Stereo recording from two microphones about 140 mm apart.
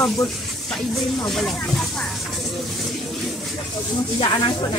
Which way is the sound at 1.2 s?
Centre (ahead or behind).